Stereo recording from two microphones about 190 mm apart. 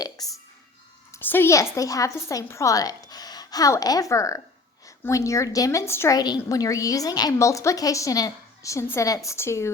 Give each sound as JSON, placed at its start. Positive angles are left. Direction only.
{"t": 1.1, "sound": "a woman's voice", "side_deg": 10}